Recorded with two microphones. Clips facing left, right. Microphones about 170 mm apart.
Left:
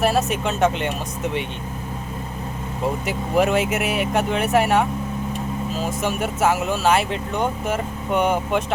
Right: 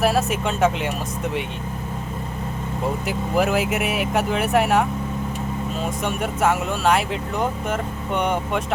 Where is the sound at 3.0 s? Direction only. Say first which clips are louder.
Left 2 dB; centre (ahead or behind).